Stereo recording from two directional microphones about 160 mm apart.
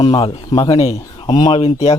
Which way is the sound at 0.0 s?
30° left (ahead or behind).